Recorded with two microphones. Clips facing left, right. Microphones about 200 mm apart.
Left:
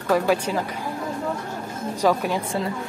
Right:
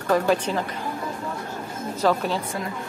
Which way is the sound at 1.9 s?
15° left (ahead or behind).